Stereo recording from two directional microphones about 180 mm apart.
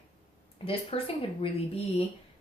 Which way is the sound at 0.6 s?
30° left (ahead or behind).